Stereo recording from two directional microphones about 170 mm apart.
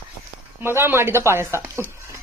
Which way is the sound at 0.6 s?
15° right (ahead or behind).